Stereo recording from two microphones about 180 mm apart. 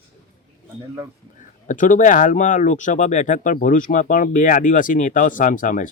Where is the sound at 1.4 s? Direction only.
45° left (ahead or behind).